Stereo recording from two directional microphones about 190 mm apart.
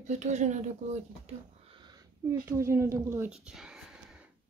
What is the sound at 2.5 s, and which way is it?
Speech, 15° right (ahead or behind).